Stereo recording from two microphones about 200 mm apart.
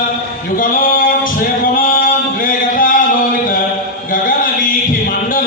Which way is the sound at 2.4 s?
45° left (ahead or behind).